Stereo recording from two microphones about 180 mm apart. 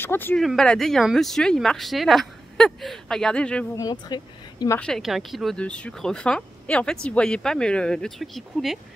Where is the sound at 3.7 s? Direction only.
20° left (ahead or behind).